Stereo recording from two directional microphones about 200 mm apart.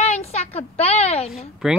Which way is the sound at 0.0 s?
30° left (ahead or behind).